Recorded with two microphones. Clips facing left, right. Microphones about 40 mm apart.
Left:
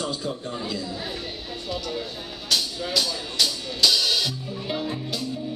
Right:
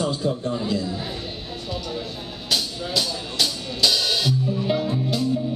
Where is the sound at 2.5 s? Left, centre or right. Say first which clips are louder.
Even; centre.